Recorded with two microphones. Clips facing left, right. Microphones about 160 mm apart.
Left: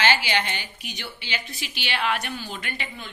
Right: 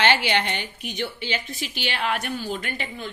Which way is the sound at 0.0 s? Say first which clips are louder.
Right 2 dB; 60° right (ahead or behind).